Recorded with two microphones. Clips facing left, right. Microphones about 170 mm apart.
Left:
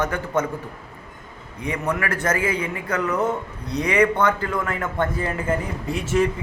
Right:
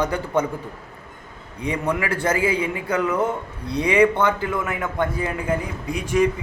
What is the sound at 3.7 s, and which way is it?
Speech, 30° right (ahead or behind).